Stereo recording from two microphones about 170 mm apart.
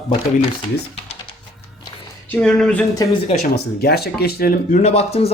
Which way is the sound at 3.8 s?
65° left (ahead or behind).